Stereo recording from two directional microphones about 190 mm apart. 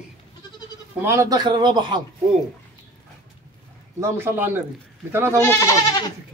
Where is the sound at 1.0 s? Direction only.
15° right (ahead or behind).